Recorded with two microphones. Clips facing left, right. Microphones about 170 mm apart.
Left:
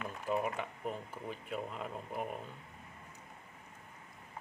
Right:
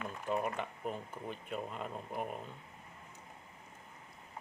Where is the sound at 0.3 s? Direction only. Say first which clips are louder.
Left 1 dB; centre (ahead or behind).